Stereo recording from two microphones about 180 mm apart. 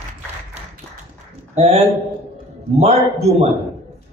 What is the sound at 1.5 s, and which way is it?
A man's voice, 40° right (ahead or behind).